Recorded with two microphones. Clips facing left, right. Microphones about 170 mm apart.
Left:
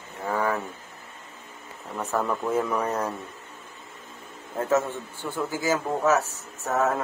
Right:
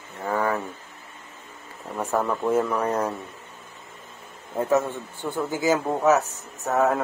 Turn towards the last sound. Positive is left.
turn(degrees=-15)  # may be behind; listen again after turning